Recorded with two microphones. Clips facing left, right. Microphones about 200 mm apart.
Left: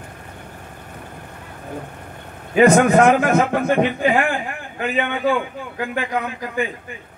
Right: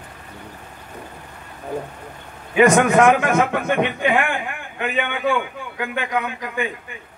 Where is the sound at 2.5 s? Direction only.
35° left (ahead or behind).